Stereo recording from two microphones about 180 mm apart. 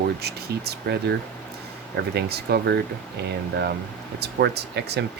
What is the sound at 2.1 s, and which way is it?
Speech, 65° right (ahead or behind).